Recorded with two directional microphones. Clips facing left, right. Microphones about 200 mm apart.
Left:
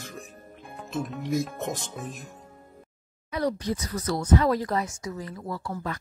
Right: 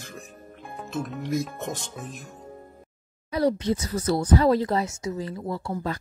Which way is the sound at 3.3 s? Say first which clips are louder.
Right 4 dB; 30° right (ahead or behind).